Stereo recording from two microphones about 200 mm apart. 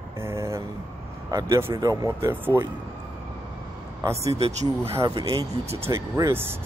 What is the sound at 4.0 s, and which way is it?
Speech, 15° right (ahead or behind).